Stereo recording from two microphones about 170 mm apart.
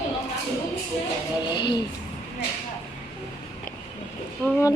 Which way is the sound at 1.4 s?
25° left (ahead or behind).